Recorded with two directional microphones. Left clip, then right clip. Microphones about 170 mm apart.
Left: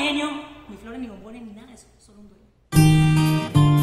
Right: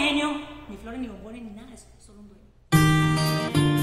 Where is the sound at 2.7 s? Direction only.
Centre (ahead or behind).